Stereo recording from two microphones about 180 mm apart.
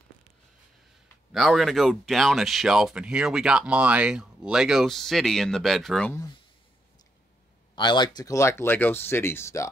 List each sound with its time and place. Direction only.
1.3 s speech: centre (ahead or behind)
7.7 s speech: 25° left (ahead or behind)